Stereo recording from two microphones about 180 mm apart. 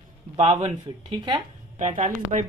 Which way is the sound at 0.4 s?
35° right (ahead or behind).